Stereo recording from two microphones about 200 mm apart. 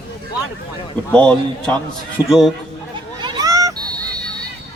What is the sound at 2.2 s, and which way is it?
Speech, 15° left (ahead or behind).